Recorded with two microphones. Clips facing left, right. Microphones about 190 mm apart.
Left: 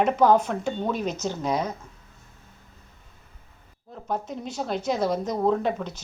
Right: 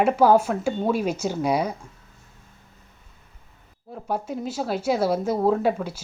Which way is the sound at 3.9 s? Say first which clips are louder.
Right 2 dB; 10° right (ahead or behind).